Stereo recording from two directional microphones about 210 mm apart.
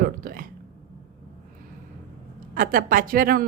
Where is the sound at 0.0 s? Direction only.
40° right (ahead or behind).